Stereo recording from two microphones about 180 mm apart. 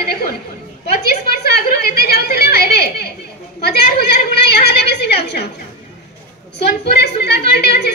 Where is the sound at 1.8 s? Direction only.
60° left (ahead or behind).